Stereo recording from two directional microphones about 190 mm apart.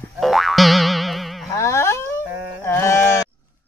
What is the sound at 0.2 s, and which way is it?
Boing, centre (ahead or behind).